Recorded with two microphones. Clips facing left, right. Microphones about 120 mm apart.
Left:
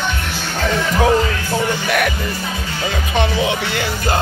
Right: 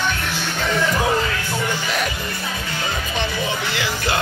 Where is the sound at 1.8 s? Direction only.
60° left (ahead or behind).